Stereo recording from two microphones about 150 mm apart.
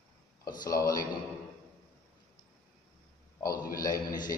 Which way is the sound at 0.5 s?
25° left (ahead or behind).